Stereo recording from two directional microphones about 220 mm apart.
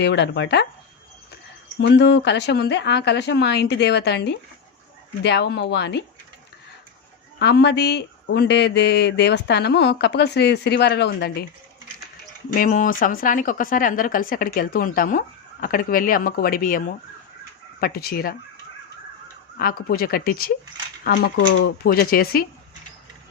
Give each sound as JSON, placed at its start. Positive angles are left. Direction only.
{"t": 0.0, "sound": "speech", "side_deg": 50}
{"t": 1.8, "sound": "speech", "side_deg": 50}
{"t": 7.3, "sound": "speech", "side_deg": 50}
{"t": 12.5, "sound": "speech", "side_deg": 40}
{"t": 19.5, "sound": "speech", "side_deg": 45}